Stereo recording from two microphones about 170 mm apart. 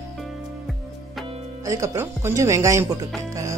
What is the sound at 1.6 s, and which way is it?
Speech, 20° right (ahead or behind).